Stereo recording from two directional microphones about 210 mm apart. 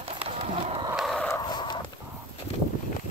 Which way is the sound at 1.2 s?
15° left (ahead or behind).